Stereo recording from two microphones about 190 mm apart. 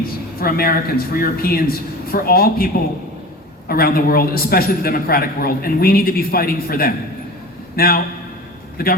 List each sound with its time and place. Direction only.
0.0 s a man's voice: 50° left (ahead or behind)
3.7 s a man's voice: 50° left (ahead or behind)